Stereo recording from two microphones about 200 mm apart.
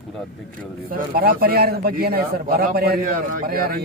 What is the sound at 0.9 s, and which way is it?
A man's voice, 50° right (ahead or behind).